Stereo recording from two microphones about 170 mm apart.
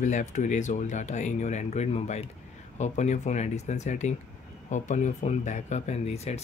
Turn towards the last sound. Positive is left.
turn(degrees=40)  # may be behind; listen again after turning